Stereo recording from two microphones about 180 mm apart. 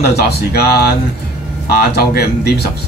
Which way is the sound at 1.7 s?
60° left (ahead or behind).